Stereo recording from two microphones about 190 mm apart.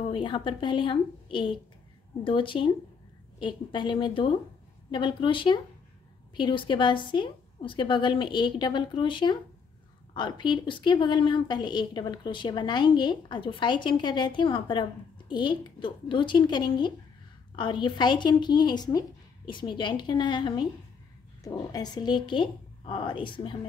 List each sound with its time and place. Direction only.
0.1 s a woman's voice: 25° left (ahead or behind)